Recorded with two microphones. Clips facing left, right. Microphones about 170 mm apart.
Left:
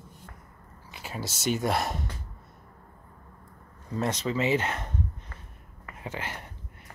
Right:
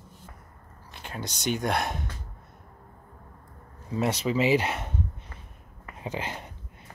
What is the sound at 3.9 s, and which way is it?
Speech, 10° right (ahead or behind).